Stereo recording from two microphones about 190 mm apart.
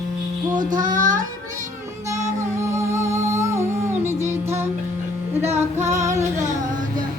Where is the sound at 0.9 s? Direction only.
45° right (ahead or behind).